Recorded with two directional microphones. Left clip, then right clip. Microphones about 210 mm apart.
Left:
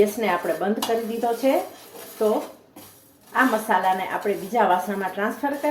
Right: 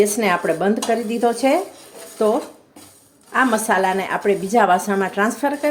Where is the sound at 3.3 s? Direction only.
55° right (ahead or behind).